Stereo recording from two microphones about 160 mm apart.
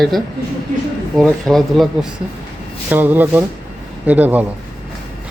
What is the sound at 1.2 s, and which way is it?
Speech, centre (ahead or behind).